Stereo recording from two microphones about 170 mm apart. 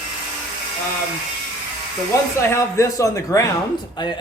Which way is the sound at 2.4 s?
15° left (ahead or behind).